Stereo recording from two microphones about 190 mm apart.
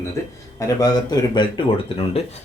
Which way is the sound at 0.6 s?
20° left (ahead or behind).